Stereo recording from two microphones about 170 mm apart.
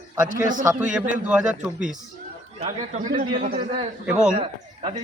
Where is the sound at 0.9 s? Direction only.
5° right (ahead or behind).